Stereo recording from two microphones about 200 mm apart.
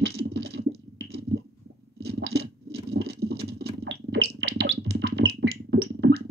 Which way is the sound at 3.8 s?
55° right (ahead or behind).